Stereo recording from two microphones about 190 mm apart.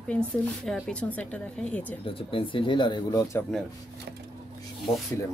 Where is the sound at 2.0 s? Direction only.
30° left (ahead or behind).